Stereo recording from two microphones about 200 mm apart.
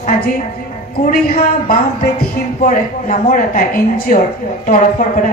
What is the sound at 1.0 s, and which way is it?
A woman's voice, 45° left (ahead or behind).